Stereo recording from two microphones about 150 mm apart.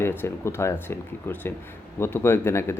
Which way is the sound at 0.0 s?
15° left (ahead or behind).